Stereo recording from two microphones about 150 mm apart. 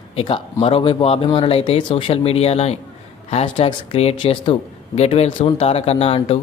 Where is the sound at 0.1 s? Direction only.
40° left (ahead or behind).